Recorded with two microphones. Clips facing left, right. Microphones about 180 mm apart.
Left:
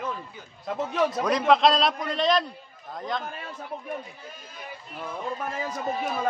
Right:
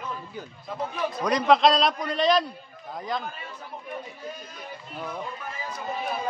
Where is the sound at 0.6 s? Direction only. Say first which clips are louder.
Left 5 dB; 80° left.